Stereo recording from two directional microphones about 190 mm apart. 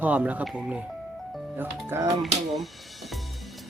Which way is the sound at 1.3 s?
10° right (ahead or behind).